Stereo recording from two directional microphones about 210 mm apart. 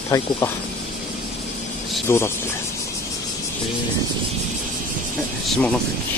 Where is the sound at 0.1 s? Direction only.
15° left (ahead or behind).